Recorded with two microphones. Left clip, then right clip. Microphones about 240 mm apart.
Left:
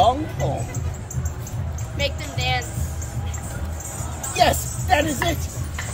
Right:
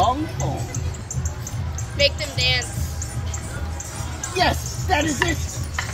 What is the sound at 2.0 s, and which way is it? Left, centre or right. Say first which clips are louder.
Speech: right 6 dB; left.